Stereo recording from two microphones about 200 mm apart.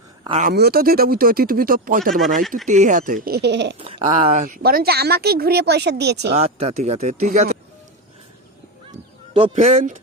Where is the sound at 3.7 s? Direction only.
25° right (ahead or behind).